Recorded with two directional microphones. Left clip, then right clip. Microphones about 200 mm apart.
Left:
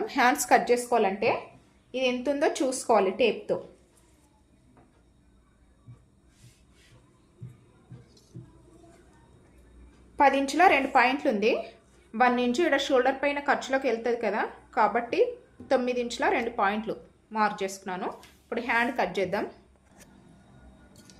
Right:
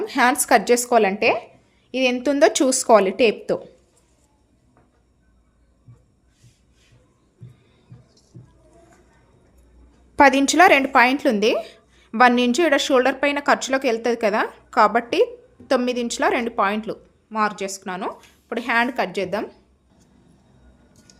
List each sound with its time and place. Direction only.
0.0 s a woman's voice: 40° right (ahead or behind); by 3.6 s 60° right (ahead or behind)
10.2 s a woman's voice: 60° right (ahead or behind); by 19.6 s 35° right (ahead or behind)